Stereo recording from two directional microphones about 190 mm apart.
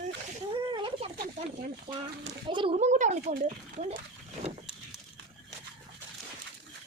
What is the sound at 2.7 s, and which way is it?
Speech, 40° right (ahead or behind).